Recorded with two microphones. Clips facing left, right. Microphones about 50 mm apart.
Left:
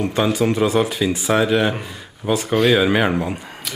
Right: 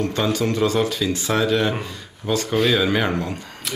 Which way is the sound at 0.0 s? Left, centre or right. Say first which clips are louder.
Left 3 dB; centre.